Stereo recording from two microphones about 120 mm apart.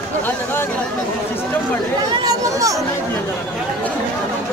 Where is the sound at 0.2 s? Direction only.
20° left (ahead or behind).